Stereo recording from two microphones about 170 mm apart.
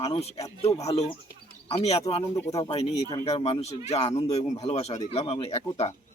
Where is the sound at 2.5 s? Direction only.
35° left (ahead or behind).